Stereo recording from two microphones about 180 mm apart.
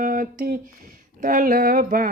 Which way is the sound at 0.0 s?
50° right (ahead or behind).